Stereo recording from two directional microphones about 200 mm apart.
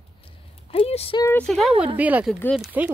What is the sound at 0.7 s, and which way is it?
Speech, 30° left (ahead or behind).